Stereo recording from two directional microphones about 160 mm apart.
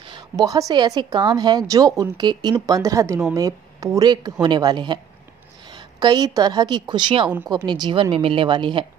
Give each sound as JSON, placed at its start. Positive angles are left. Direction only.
{"t": 0.0, "sound": "a woman's voice", "side_deg": -25}